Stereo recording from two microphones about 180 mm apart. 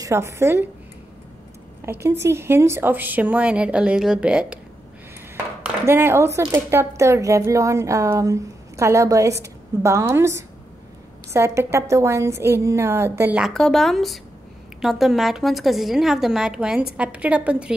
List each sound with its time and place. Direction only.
0.0 s speech: 15° right (ahead or behind)
2.0 s speech: 15° right (ahead or behind)
5.9 s speech: 15° right (ahead or behind)
13.5 s a woman's voice: 5° left (ahead or behind)